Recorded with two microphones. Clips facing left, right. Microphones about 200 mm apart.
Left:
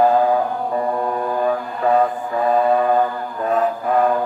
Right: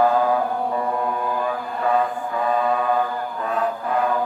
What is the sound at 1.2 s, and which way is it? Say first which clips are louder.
Mantra: left 5 dB; 40° left (ahead or behind).